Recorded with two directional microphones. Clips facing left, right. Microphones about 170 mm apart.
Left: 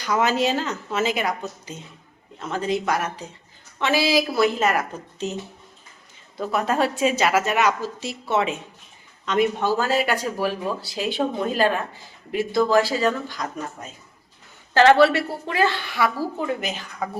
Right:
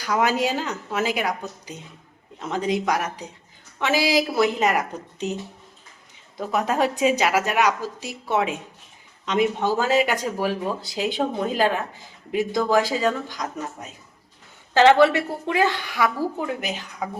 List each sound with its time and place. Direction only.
0.0 s a woman's voice: 10° right (ahead or behind)
6.3 s a woman's voice: 15° right (ahead or behind)
14.7 s a woman's voice: 15° right (ahead or behind)